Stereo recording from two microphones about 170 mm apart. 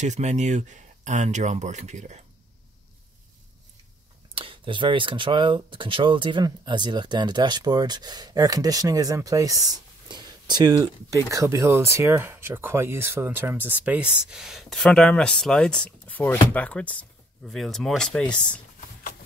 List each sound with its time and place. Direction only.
0.0 s speech: 45° right (ahead or behind)
4.4 s speech: 30° right (ahead or behind); by 18.2 s 5° left (ahead or behind)